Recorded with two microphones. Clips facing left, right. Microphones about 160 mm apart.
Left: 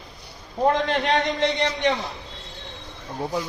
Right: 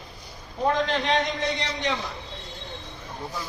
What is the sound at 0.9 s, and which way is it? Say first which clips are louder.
A man's voice: left 2 dB; 60° left (ahead or behind).